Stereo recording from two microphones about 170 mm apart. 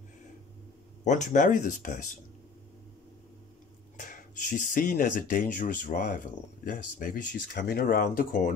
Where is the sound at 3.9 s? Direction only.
50° left (ahead or behind).